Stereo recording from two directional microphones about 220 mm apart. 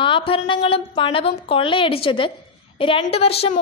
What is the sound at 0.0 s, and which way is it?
A woman's voice, 25° left (ahead or behind).